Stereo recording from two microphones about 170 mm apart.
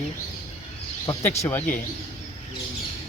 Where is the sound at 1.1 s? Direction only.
15° left (ahead or behind).